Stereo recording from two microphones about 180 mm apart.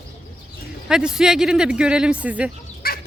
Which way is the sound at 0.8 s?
5° right (ahead or behind).